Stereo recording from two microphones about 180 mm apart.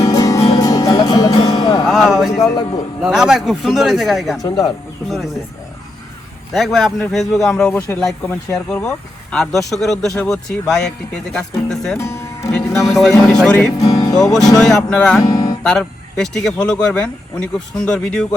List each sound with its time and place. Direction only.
0.1 s music: 20° left (ahead or behind)
1.8 s music: centre (ahead or behind)
3.0 s speech: 5° right (ahead or behind)
4.4 s speech: 20° left (ahead or behind)
5.0 s speech: centre (ahead or behind)
6.5 s speech: centre (ahead or behind)
11.9 s speech: 15° left (ahead or behind)
12.8 s speech: centre (ahead or behind)
13.7 s music: 20° left (ahead or behind)
14.6 s speech: 5° left (ahead or behind)